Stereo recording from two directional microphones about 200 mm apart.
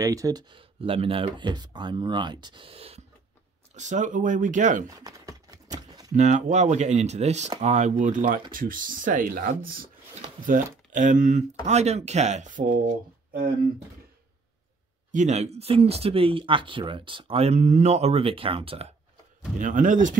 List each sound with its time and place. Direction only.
0.0 s speech: 15° right (ahead or behind); by 4.8 s 40° right (ahead or behind)
4.8 s typing: 15° right (ahead or behind)
6.1 s speech: 35° right (ahead or behind)
15.0 s speech: 35° right (ahead or behind)
19.6 s speech: 40° right (ahead or behind)